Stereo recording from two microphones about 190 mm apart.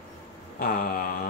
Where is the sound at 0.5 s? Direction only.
50° left (ahead or behind).